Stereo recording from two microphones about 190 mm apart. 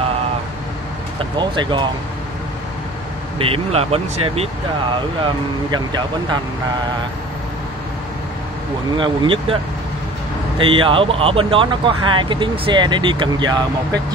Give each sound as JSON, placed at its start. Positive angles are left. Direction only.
{"t": 1.4, "sound": "speech", "side_deg": -25}
{"t": 3.3, "sound": "speech", "side_deg": -30}
{"t": 8.9, "sound": "speech", "side_deg": -25}
{"t": 10.6, "sound": "speech", "side_deg": -25}